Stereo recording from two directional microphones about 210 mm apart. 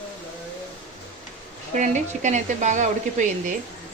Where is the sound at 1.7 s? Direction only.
35° right (ahead or behind).